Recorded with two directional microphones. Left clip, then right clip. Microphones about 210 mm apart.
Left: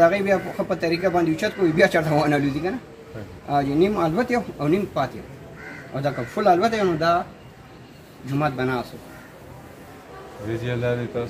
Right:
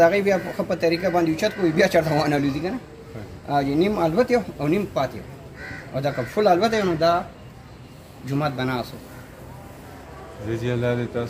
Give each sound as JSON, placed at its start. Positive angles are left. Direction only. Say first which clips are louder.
{"t": 0.0, "sound": "speech", "louder": "even", "side_deg": -5}
{"t": 8.4, "sound": "speech", "louder": "left 2 dB", "side_deg": -10}
{"t": 10.6, "sound": "a man's voice", "louder": "right 1 dB", "side_deg": 15}